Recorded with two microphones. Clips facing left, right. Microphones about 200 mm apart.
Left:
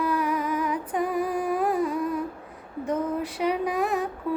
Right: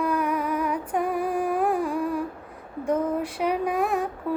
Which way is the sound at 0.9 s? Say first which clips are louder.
Even; 60° right (ahead or behind).